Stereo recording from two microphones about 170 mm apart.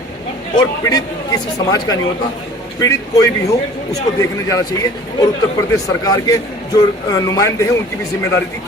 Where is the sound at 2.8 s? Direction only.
20° left (ahead or behind).